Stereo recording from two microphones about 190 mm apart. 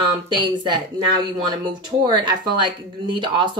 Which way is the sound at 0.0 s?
25° right (ahead or behind).